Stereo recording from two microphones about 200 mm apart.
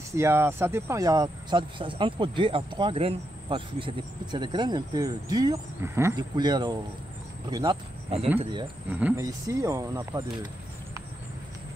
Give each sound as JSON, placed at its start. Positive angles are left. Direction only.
{"t": 0.1, "sound": "speech", "side_deg": -15}